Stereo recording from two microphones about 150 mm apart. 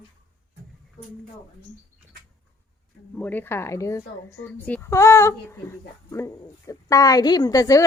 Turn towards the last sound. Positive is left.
turn(degrees=25)  # may be behind; listen again after turning